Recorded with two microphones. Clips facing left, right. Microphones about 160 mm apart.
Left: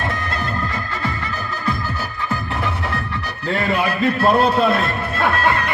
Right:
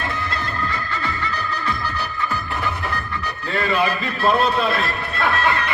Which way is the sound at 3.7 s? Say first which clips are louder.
Left 3 dB; 45° left (ahead or behind).